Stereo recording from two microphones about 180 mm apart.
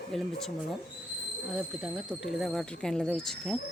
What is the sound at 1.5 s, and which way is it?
Speech, centre (ahead or behind).